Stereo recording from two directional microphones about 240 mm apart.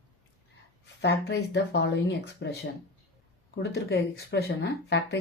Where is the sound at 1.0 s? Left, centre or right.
Left.